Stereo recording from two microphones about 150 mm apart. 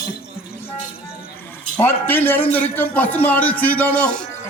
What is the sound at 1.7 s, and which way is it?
A man's voice, 15° left (ahead or behind).